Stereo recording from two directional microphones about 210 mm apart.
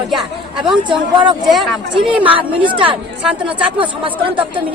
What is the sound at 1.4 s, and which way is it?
A woman's voice, centre (ahead or behind).